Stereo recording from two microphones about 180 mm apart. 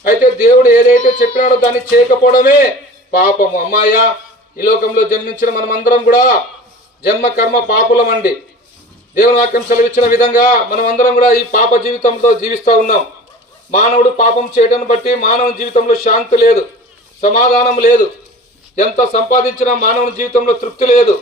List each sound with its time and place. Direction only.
0.2 s a man's voice: 50° left (ahead or behind)